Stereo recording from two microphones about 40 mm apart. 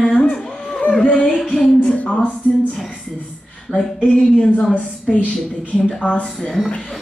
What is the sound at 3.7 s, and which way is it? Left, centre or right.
A woman's voice, left.